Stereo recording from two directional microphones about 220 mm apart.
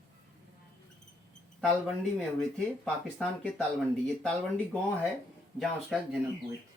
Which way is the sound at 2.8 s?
5° left (ahead or behind).